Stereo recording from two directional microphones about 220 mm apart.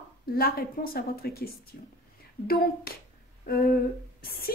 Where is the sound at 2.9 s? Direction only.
45° left (ahead or behind).